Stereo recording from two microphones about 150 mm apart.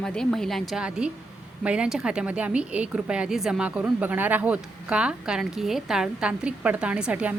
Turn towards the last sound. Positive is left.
turn(degrees=-10)  # may be behind; listen again after turning